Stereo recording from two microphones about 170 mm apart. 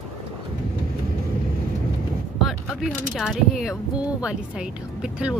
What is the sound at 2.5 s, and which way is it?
Speech, centre (ahead or behind).